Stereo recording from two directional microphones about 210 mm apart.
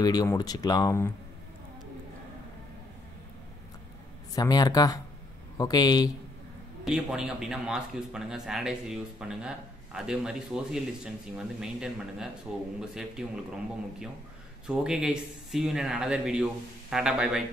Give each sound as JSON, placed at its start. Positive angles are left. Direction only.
{"t": 0.0, "sound": "speech", "side_deg": 20}
{"t": 4.4, "sound": "speech", "side_deg": 20}
{"t": 6.8, "sound": "speech", "side_deg": -5}